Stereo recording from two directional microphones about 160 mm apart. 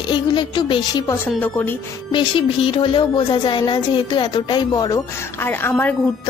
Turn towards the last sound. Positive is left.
turn(degrees=10)  # may be behind; listen again after turning